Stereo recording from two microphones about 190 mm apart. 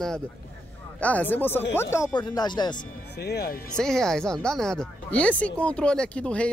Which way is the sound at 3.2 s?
55° left (ahead or behind).